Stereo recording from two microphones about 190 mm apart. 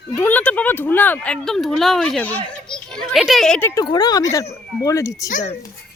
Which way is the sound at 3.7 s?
20° left (ahead or behind).